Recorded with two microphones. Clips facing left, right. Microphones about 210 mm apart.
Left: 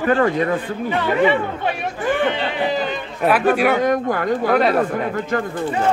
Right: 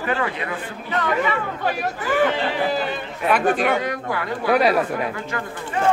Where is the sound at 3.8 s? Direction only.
45° left (ahead or behind).